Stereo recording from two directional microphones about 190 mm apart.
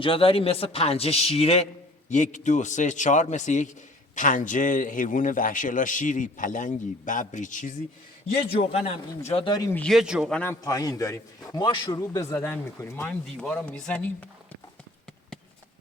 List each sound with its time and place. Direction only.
0.0 s a man's voice: 30° left (ahead or behind)
8.7 s speech: 35° left (ahead or behind)
9.7 s a man's voice: centre (ahead or behind)
10.6 s a man's voice: 20° left (ahead or behind)